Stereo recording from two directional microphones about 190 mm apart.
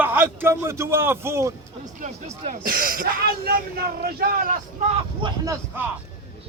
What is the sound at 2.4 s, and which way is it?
Speech, 45° right (ahead or behind).